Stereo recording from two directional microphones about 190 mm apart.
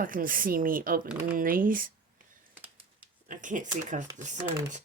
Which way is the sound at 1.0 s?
5° right (ahead or behind).